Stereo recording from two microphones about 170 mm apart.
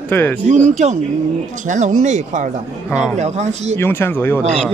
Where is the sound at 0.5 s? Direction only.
45° right (ahead or behind).